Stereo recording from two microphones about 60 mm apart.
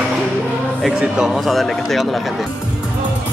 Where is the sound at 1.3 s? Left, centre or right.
Centre.